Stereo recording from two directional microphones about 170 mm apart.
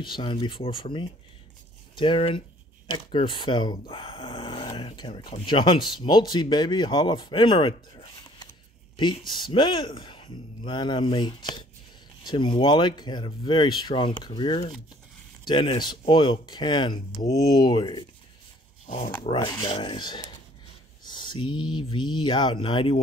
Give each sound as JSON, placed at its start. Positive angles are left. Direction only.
{"t": 0.0, "sound": "speech", "side_deg": 30}
{"t": 19.2, "sound": "speech", "side_deg": 30}